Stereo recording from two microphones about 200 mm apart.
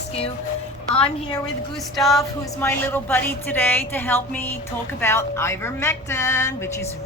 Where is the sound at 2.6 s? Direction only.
10° left (ahead or behind).